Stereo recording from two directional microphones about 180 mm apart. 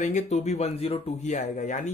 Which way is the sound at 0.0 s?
40° left (ahead or behind).